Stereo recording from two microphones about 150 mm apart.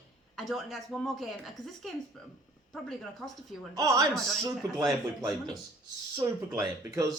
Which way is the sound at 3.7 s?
20° right (ahead or behind).